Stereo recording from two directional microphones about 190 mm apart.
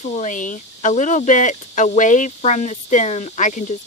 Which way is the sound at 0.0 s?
35° left (ahead or behind).